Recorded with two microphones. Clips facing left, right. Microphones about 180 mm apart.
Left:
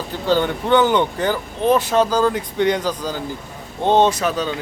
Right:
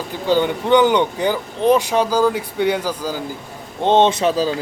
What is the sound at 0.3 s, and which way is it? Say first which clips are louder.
Speech: right 1 dB; 15° right (ahead or behind).